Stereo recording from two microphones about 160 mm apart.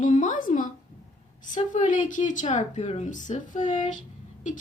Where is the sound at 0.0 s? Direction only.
50° left (ahead or behind).